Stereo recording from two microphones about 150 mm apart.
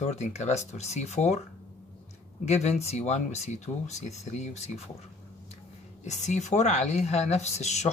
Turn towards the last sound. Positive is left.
turn(degrees=50)  # may be behind; listen again after turning